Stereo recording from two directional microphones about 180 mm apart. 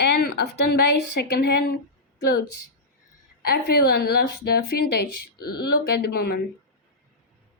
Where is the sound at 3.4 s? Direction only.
60° left (ahead or behind).